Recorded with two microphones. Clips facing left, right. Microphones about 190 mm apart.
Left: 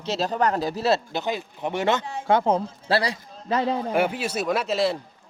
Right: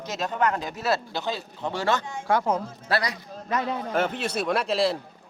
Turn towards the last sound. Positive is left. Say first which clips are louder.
# left 1 dB
turn(degrees=0)  # may be behind; listen again after turning